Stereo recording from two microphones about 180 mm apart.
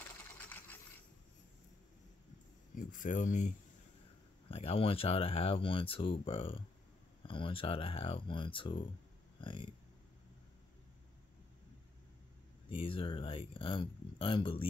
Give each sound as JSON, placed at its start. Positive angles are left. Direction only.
{"t": 0.4, "sound": "sewing machine", "side_deg": 10}
{"t": 2.7, "sound": "speech", "side_deg": 45}
{"t": 4.5, "sound": "speech", "side_deg": 30}
{"t": 12.6, "sound": "speech", "side_deg": 30}